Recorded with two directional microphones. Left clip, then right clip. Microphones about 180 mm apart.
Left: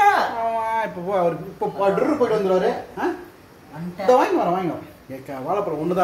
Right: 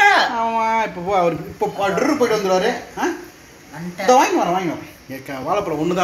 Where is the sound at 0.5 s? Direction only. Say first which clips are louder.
Right 4 dB; 30° right (ahead or behind).